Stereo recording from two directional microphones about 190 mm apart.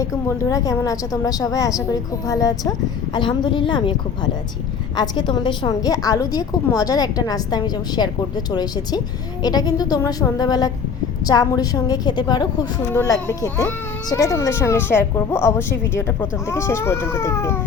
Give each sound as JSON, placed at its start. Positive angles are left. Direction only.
{"t": 0.0, "sound": "a woman's voice", "side_deg": 15}
{"t": 5.0, "sound": "a woman's voice", "side_deg": 20}
{"t": 9.4, "sound": "a woman's voice", "side_deg": 20}